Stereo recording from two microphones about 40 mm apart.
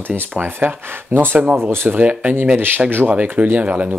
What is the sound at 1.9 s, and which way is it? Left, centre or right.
Speech, right.